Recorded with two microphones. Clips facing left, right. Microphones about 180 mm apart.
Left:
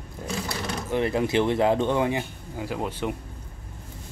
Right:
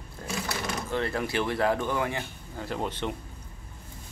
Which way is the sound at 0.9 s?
20° left (ahead or behind).